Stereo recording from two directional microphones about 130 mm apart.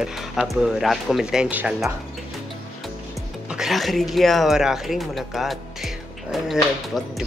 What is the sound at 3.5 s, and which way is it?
Speech, centre (ahead or behind).